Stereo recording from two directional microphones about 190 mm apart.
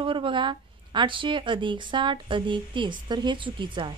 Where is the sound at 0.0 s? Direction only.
25° right (ahead or behind).